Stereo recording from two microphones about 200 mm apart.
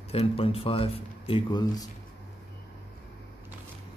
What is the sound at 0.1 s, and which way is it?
Speech, 30° left (ahead or behind).